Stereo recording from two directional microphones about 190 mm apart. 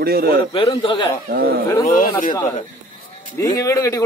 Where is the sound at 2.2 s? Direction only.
15° left (ahead or behind).